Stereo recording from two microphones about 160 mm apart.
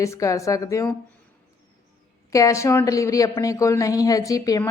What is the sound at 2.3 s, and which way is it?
A woman's voice, 20° left (ahead or behind).